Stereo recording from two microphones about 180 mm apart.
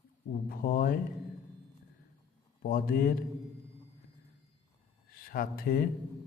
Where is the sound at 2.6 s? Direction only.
55° left (ahead or behind).